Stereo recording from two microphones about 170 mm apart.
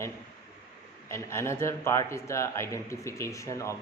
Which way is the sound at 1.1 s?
15° left (ahead or behind).